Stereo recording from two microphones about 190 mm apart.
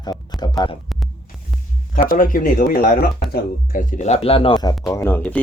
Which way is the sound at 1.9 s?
45° left (ahead or behind).